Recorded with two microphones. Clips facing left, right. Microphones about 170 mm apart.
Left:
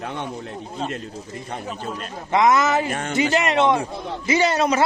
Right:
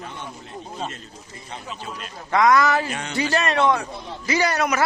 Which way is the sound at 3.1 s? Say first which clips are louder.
Left 2 dB; 20° left (ahead or behind).